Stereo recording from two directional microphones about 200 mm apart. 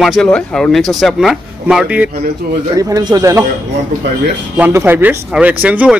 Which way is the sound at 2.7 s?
15° right (ahead or behind).